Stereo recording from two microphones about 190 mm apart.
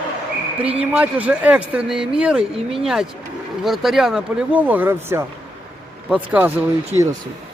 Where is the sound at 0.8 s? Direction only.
5° right (ahead or behind).